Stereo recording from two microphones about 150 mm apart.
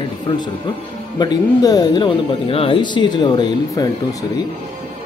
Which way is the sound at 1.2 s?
25° left (ahead or behind).